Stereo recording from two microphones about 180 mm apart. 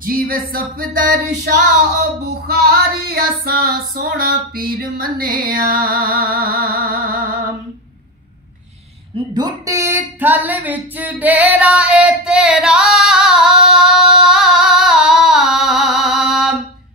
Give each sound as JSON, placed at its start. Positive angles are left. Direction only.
{"t": 0.0, "sound": "music", "side_deg": -55}
{"t": 2.2, "sound": "female singing", "side_deg": -60}
{"t": 5.4, "sound": "music", "side_deg": -55}
{"t": 9.3, "sound": "a sound", "side_deg": -20}